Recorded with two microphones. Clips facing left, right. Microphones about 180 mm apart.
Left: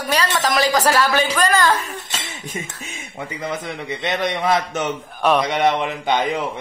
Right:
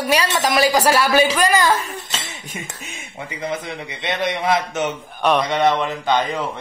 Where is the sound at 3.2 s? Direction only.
50° left (ahead or behind).